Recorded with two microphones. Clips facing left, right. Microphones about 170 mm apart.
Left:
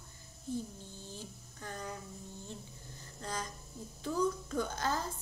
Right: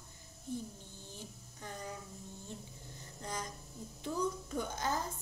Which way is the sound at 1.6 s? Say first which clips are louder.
Left 2 dB; 20° right (ahead or behind).